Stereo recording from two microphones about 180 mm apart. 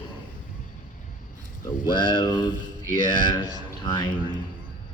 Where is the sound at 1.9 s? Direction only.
25° left (ahead or behind).